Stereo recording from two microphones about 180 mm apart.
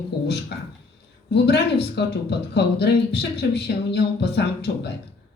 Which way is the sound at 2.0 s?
70° left (ahead or behind).